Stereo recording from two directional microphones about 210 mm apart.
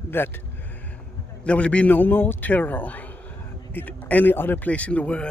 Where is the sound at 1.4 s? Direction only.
5° left (ahead or behind).